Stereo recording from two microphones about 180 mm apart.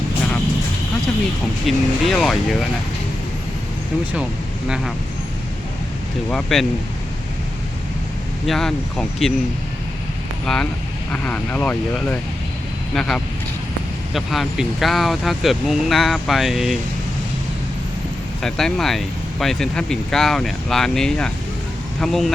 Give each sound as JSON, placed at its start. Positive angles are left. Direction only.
{"t": 1.6, "sound": "speech", "side_deg": 0}
{"t": 6.3, "sound": "speech", "side_deg": 0}
{"t": 8.4, "sound": "speech", "side_deg": 5}
{"t": 10.4, "sound": "speech", "side_deg": 5}
{"t": 12.9, "sound": "speech", "side_deg": 5}
{"t": 18.4, "sound": "speech", "side_deg": 5}